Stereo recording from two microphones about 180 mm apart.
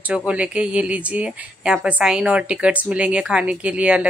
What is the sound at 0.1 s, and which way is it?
Speech, 5° right (ahead or behind).